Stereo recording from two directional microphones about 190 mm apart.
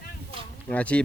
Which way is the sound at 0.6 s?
5° left (ahead or behind).